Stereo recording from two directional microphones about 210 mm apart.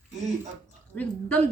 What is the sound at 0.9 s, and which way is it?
Speech, 5° left (ahead or behind).